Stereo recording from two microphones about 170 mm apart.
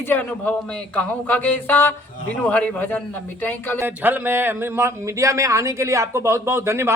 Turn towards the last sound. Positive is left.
turn(degrees=-15)  # may be behind; listen again after turning